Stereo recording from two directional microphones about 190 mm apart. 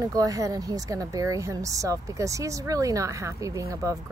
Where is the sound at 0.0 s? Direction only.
20° right (ahead or behind).